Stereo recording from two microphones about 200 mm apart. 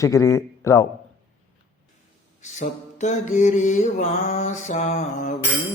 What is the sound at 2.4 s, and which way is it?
Mantra, 35° left (ahead or behind).